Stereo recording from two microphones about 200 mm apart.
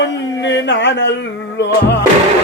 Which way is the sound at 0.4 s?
60° left (ahead or behind).